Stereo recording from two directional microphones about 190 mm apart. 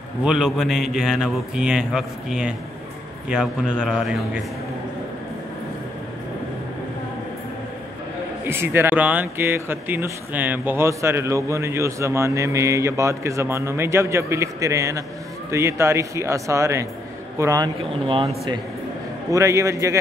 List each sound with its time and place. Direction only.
0.2 s a man's voice: 5° right (ahead or behind)
8.5 s speech: 10° right (ahead or behind)